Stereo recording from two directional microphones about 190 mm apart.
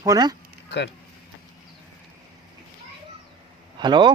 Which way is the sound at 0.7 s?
65° left (ahead or behind).